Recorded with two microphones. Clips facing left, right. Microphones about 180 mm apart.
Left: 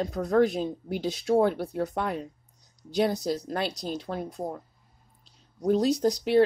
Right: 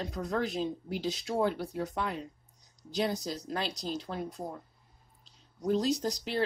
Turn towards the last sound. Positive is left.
turn(degrees=55)  # may be behind; listen again after turning